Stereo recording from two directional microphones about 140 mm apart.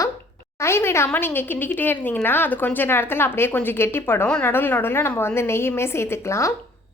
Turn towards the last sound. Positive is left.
turn(degrees=20)  # may be behind; listen again after turning